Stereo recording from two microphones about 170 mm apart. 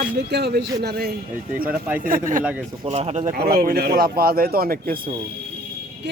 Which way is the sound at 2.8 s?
40° right (ahead or behind).